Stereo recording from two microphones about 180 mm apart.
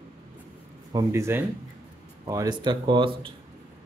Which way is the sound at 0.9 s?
15° right (ahead or behind).